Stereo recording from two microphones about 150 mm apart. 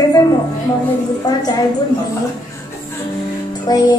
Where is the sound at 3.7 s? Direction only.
25° left (ahead or behind).